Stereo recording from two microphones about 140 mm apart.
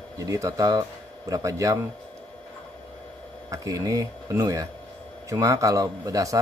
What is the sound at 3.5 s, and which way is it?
Speech, 25° right (ahead or behind).